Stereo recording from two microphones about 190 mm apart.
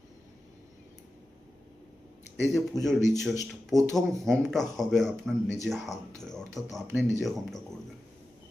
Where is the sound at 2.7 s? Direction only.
Centre (ahead or behind).